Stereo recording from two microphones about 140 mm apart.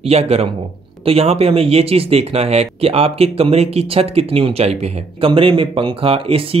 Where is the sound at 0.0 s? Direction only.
45° right (ahead or behind).